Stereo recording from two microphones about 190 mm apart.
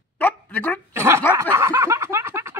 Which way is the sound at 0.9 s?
15° right (ahead or behind).